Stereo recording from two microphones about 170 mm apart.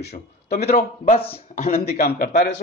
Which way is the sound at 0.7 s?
40° left (ahead or behind).